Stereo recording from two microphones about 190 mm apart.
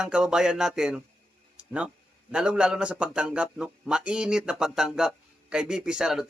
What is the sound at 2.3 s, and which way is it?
Speech, 5° right (ahead or behind).